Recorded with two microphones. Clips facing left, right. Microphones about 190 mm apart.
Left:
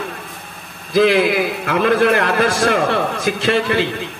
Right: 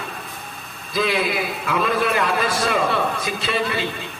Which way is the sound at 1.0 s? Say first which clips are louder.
Left 8 dB; 65° left (ahead or behind).